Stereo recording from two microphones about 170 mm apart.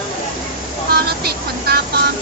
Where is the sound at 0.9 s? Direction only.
65° right (ahead or behind).